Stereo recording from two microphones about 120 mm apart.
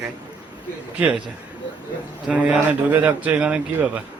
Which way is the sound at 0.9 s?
10° right (ahead or behind).